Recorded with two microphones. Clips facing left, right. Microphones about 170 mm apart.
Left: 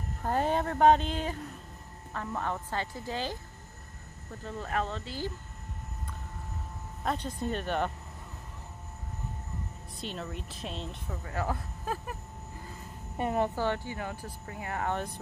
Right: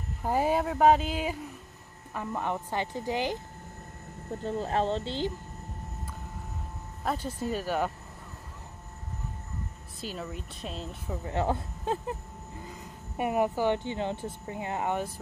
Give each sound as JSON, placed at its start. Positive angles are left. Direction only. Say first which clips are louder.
{"t": 0.2, "sound": "speech", "louder": "right 2 dB", "side_deg": -10}
{"t": 4.3, "sound": "speech", "louder": "right 6 dB", "side_deg": -30}
{"t": 7.0, "sound": "speech", "louder": "right 1 dB", "side_deg": -5}
{"t": 9.9, "sound": "speech", "louder": "right 1 dB", "side_deg": -5}
{"t": 11.1, "sound": "speech", "louder": "right 5 dB", "side_deg": -25}
{"t": 13.2, "sound": "speech", "louder": "right 2 dB", "side_deg": -10}